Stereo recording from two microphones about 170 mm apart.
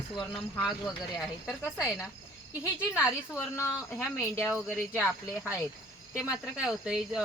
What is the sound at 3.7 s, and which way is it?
Speech, centre (ahead or behind).